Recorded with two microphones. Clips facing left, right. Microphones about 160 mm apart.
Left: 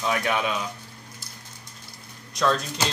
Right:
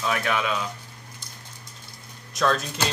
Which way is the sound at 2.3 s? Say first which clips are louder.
Even; centre (ahead or behind).